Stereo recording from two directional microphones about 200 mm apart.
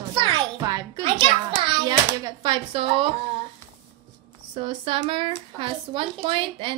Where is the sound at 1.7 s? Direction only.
20° right (ahead or behind).